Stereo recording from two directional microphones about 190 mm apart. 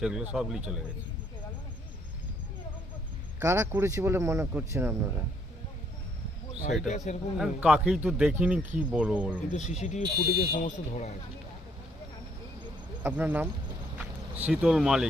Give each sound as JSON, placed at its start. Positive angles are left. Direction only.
{"t": 0.0, "sound": "speech", "side_deg": -5}
{"t": 3.4, "sound": "speech", "side_deg": -15}
{"t": 6.8, "sound": "speech", "side_deg": 40}
{"t": 7.3, "sound": "speech", "side_deg": -5}
{"t": 9.5, "sound": "speech", "side_deg": 35}
{"t": 10.2, "sound": "speech", "side_deg": 55}
{"t": 10.5, "sound": "speech", "side_deg": 40}
{"t": 13.0, "sound": "speech", "side_deg": -10}